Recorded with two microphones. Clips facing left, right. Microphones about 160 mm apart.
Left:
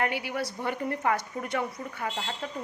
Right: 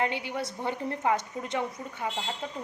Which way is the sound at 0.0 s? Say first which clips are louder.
Even; 25° right (ahead or behind).